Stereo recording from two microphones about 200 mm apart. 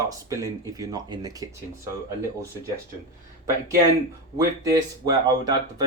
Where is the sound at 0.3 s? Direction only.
15° right (ahead or behind).